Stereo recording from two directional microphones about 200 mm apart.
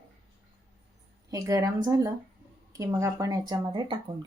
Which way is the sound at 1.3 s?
20° right (ahead or behind).